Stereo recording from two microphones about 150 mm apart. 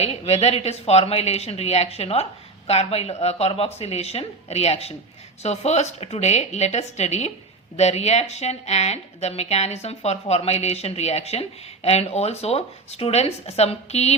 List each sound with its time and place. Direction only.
0.0 s a woman's voice: 45° left (ahead or behind)